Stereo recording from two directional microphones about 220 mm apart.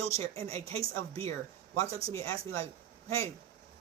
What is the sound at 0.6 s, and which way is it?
Speech, 15° left (ahead or behind).